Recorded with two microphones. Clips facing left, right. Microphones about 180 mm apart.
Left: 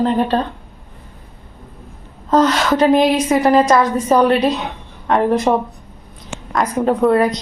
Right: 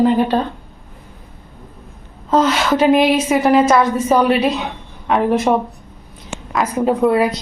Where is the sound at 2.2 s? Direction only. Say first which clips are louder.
Left 1 dB; 5° right (ahead or behind).